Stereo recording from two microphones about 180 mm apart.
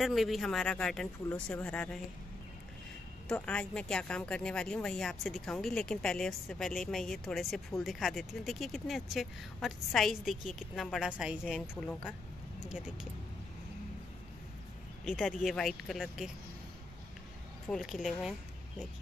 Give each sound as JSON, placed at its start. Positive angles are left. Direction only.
{"t": 0.0, "sound": "a woman's voice", "side_deg": 0}
{"t": 3.3, "sound": "a woman's voice", "side_deg": 5}
{"t": 12.6, "sound": "a woman's voice", "side_deg": -5}
{"t": 15.0, "sound": "a woman's voice", "side_deg": 0}
{"t": 17.6, "sound": "a woman's voice", "side_deg": 0}